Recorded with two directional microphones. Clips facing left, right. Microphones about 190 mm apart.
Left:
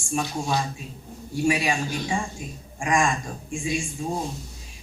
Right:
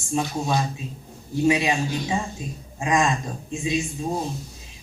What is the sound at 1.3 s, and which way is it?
A man's voice, 20° right (ahead or behind).